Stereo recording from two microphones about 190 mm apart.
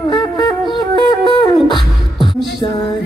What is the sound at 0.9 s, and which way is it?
Music, 25° left (ahead or behind).